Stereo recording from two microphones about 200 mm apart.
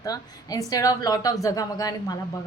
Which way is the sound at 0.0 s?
20° left (ahead or behind).